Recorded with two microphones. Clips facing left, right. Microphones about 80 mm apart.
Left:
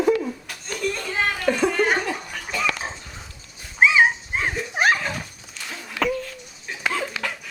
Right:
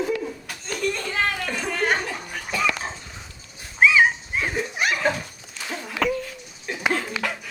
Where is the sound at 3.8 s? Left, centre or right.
Left.